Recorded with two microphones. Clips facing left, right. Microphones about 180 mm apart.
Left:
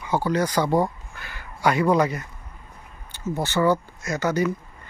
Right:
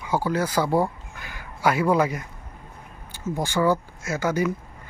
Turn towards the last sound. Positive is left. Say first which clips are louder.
# left 1 dB
turn(degrees=-10)  # may be behind; listen again after turning